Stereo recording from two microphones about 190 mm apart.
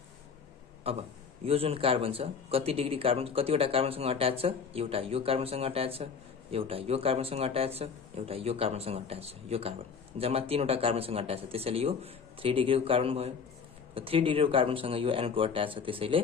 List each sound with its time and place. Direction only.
0.8 s speech: 30° right (ahead or behind)